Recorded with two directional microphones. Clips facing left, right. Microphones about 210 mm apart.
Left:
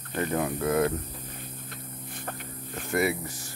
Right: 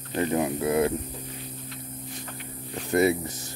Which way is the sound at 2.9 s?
20° right (ahead or behind).